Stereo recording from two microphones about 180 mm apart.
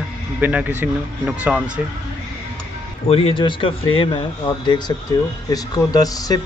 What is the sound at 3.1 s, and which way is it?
Speech, 30° left (ahead or behind).